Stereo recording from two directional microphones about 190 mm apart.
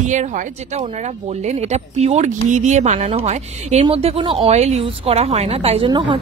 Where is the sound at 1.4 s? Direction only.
35° right (ahead or behind).